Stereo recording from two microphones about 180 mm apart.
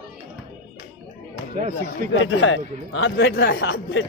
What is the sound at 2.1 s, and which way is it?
Speech, 90° left.